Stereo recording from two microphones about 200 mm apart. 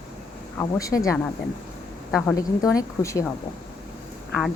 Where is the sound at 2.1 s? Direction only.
5° left (ahead or behind).